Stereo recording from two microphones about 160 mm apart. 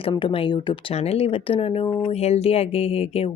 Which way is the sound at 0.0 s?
30° left (ahead or behind).